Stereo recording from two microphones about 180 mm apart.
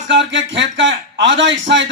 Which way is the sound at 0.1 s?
90° right.